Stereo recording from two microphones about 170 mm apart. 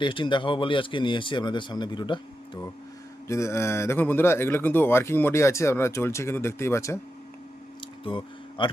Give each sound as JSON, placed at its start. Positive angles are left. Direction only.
{"t": 0.0, "sound": "speech", "side_deg": 30}
{"t": 3.2, "sound": "speech", "side_deg": 15}
{"t": 8.0, "sound": "speech", "side_deg": 30}